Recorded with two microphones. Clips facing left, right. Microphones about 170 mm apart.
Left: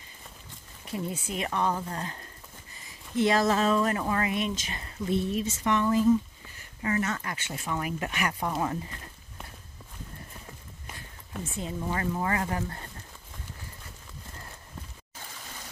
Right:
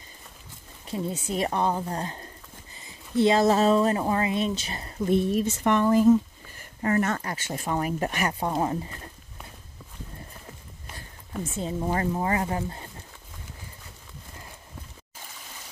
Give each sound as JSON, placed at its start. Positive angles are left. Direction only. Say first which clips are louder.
{"t": 0.8, "sound": "speech", "louder": "right 3 dB", "side_deg": -30}
{"t": 5.1, "sound": "speech", "louder": "right 5 dB", "side_deg": -55}
{"t": 11.5, "sound": "speech", "louder": "right 5 dB", "side_deg": -35}